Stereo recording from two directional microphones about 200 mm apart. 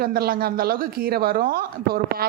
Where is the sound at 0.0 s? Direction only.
50° right (ahead or behind).